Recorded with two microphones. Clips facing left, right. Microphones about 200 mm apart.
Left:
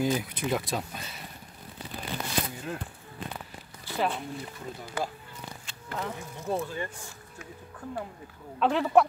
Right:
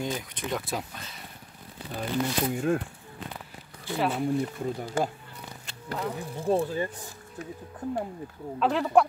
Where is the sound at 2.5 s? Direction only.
50° right (ahead or behind).